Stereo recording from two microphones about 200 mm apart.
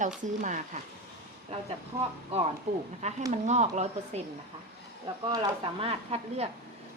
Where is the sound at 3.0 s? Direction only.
35° right (ahead or behind).